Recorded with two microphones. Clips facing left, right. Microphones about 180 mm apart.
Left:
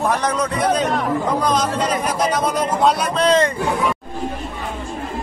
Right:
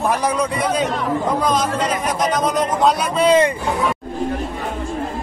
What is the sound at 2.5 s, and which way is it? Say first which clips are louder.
Speech: even; 5° right (ahead or behind).